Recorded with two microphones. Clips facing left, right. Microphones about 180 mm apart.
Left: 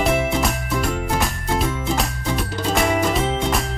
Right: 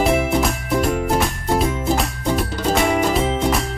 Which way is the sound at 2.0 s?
Centre (ahead or behind).